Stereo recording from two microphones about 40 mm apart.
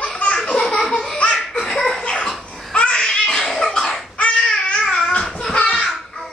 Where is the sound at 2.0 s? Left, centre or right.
Left.